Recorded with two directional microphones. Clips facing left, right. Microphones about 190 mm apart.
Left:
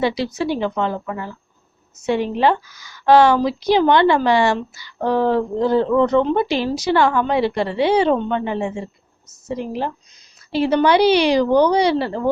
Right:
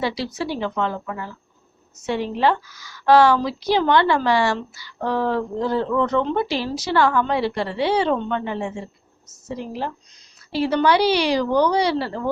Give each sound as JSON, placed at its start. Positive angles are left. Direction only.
{"t": 0.0, "sound": "a woman's voice", "side_deg": 20}